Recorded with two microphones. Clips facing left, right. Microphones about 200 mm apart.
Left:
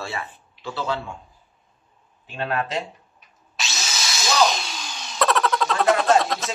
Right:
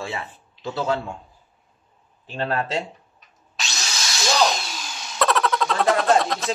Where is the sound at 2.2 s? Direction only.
35° right (ahead or behind).